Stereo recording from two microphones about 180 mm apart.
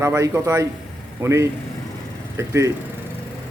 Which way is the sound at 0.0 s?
15° right (ahead or behind).